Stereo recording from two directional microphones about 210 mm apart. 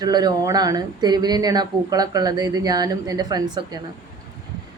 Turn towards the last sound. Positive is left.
turn(degrees=-20)  # may be behind; listen again after turning